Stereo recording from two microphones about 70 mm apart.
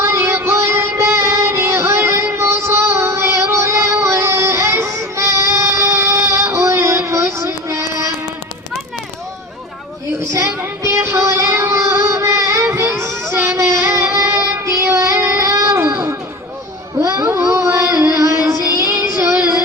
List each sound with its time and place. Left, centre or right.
0.0 s music: right
10.2 s child singing: right
15.7 s baby cry: right
17.0 s a sound: right
18.0 s music: right